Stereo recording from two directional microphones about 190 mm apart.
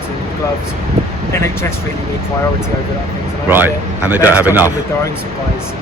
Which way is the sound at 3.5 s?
10° right (ahead or behind).